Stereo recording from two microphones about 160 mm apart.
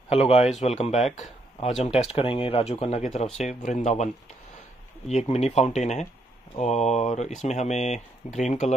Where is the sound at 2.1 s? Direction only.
35° left (ahead or behind).